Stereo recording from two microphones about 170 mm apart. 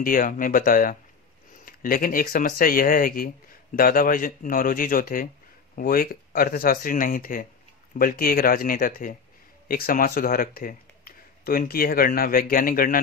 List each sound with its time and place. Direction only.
0.0 s speech: 55° left (ahead or behind)